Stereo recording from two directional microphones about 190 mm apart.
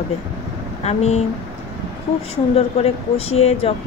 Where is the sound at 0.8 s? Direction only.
35° left (ahead or behind).